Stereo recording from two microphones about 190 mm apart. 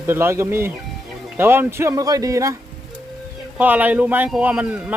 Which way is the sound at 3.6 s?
10° right (ahead or behind).